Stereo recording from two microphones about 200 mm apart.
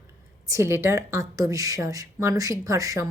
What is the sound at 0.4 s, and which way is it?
Speech, 15° right (ahead or behind).